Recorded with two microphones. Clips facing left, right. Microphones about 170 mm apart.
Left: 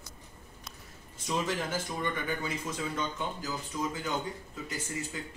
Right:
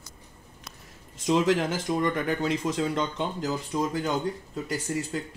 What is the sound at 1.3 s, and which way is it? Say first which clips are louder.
Speech: right 9 dB; 80° right.